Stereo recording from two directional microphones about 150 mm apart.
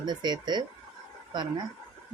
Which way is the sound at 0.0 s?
30° right (ahead or behind).